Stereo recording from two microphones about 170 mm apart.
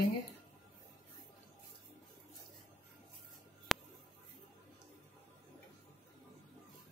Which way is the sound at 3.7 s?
Centre (ahead or behind).